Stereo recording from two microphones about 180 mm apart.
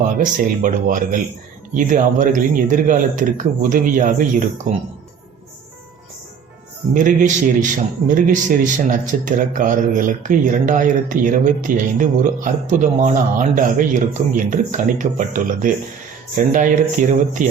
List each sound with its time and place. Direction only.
0.0 s a man's voice: 45° right (ahead or behind)
6.9 s a man's voice: 45° right (ahead or behind)